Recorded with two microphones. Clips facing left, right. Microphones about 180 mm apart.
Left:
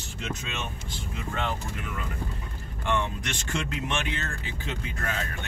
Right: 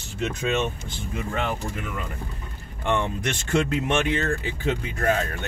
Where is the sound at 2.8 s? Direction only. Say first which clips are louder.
Right 4 dB; 55° right (ahead or behind).